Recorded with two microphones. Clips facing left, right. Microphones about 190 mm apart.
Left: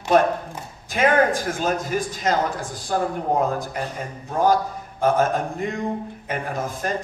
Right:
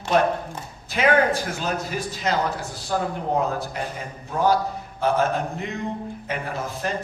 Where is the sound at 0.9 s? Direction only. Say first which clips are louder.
Left 1 dB; 45° left (ahead or behind).